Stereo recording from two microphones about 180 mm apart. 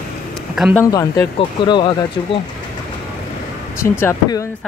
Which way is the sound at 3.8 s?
10° left (ahead or behind).